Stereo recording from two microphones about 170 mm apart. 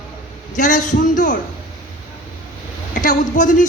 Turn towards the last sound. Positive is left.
turn(degrees=50)  # may be behind; listen again after turning